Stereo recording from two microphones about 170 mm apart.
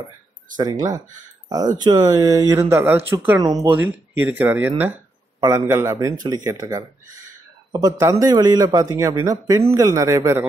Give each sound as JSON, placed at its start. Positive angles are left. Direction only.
{"t": 0.6, "sound": "a man's voice", "side_deg": -20}
{"t": 3.3, "sound": "a man's voice", "side_deg": -20}
{"t": 3.6, "sound": "a man's voice", "side_deg": -10}